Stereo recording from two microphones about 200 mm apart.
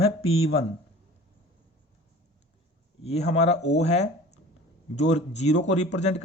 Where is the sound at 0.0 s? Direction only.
30° left (ahead or behind).